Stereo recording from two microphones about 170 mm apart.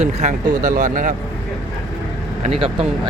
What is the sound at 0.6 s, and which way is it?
Speech, 55° right (ahead or behind).